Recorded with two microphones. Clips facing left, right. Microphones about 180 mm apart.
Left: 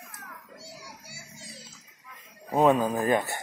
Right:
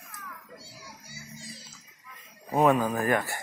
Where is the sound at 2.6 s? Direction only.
20° left (ahead or behind).